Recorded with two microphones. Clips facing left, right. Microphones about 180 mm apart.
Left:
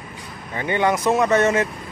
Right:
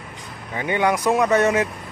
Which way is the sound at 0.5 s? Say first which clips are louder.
Even; 10° right (ahead or behind).